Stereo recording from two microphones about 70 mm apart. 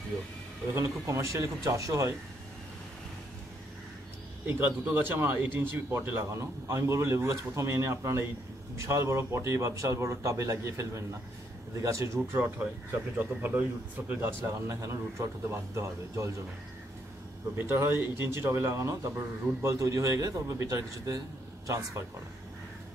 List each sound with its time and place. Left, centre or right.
0.7 s speech: right
4.5 s speech: right
12.4 s a man's voice: right
14.4 s speech: right
17.6 s speech: right